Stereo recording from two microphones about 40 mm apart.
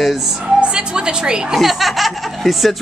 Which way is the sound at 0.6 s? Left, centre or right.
Right.